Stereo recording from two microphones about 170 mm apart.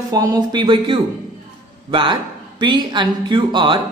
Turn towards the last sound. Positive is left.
turn(degrees=-30)  # may be behind; listen again after turning